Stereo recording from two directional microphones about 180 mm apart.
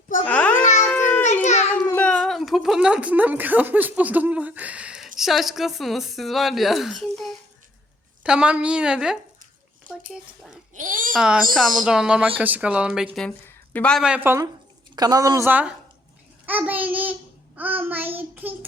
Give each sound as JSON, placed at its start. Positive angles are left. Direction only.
{"t": 0.3, "sound": "babbling", "side_deg": 10}
{"t": 0.9, "sound": "a sound", "side_deg": 10}
{"t": 1.2, "sound": "a sound", "side_deg": 40}
{"t": 1.9, "sound": "a woman's voice", "side_deg": 10}
{"t": 10.8, "sound": "a child's voice", "side_deg": -45}
{"t": 11.1, "sound": "a woman's voice", "side_deg": -5}
{"t": 12.4, "sound": "child singing", "side_deg": -10}
{"t": 13.1, "sound": "speech", "side_deg": 5}
{"t": 14.9, "sound": "child singing", "side_deg": -20}